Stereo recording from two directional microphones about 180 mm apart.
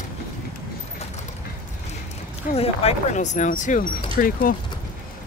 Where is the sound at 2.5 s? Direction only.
35° left (ahead or behind); by 4.6 s 50° left (ahead or behind).